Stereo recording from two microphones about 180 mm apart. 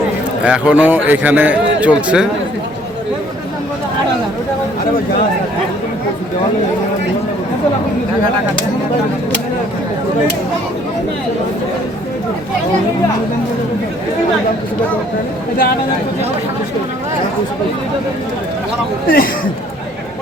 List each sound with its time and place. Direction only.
0.4 s a man's voice: 5° right (ahead or behind)
19.0 s speech: 55° left (ahead or behind)